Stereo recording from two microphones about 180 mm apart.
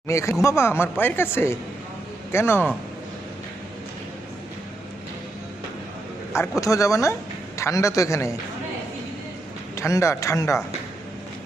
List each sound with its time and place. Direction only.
0.1 s speech: 15° left (ahead or behind)
6.6 s speech: 15° left (ahead or behind)
9.7 s speech: 15° left (ahead or behind)